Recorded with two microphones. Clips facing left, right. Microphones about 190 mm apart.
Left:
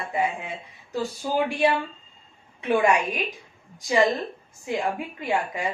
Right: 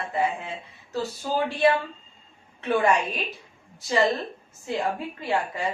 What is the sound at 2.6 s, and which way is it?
Speech, 10° left (ahead or behind).